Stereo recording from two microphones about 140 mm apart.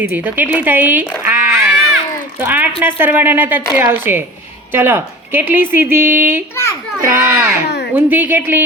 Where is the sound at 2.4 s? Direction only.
10° right (ahead or behind).